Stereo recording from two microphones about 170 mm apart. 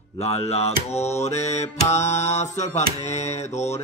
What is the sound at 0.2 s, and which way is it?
Mantra, 35° left (ahead or behind).